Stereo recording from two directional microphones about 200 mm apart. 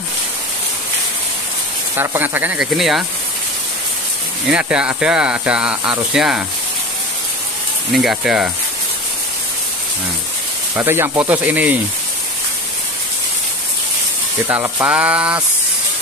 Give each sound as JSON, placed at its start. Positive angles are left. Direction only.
{"t": 2.0, "sound": "speech", "side_deg": -10}
{"t": 4.5, "sound": "speech", "side_deg": -5}
{"t": 7.9, "sound": "speech", "side_deg": 0}
{"t": 10.8, "sound": "speech", "side_deg": -10}
{"t": 14.5, "sound": "speech", "side_deg": -10}